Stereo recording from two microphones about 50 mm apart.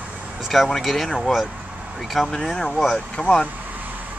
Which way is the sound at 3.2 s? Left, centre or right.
Centre.